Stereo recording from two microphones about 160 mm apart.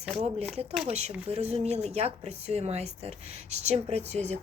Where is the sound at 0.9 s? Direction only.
40° right (ahead or behind).